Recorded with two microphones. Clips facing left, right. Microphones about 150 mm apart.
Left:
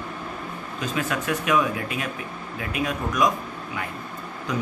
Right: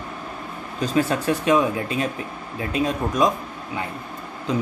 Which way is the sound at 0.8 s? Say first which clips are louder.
Right 6 dB; 35° right (ahead or behind).